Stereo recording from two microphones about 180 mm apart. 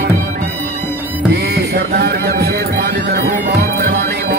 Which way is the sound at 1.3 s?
65° right (ahead or behind).